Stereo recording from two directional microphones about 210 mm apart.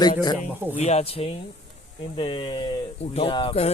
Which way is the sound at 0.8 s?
30° left (ahead or behind).